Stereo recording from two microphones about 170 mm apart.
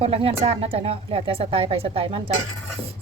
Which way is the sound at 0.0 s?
35° right (ahead or behind).